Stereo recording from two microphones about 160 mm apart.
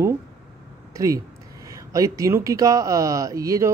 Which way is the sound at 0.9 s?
20° right (ahead or behind).